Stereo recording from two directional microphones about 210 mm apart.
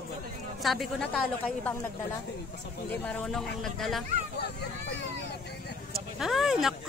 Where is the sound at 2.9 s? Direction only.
5° left (ahead or behind).